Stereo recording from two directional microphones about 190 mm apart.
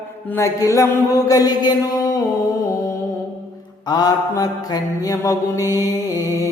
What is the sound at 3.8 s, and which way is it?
Mantra, 20° left (ahead or behind).